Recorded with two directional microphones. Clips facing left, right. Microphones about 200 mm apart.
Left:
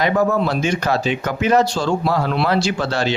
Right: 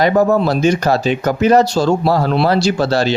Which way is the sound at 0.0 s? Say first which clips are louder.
Right 5 dB; 35° right (ahead or behind).